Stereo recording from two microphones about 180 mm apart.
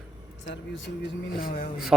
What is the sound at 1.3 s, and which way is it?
Speech, 50° left (ahead or behind).